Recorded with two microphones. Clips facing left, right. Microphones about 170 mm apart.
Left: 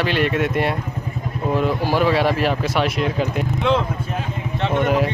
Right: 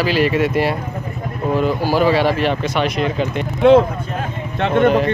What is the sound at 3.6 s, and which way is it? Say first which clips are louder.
Speech: right 10 dB; 50° right (ahead or behind).